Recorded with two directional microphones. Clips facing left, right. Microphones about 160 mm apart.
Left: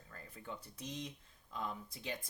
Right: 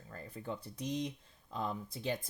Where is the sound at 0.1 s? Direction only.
35° right (ahead or behind).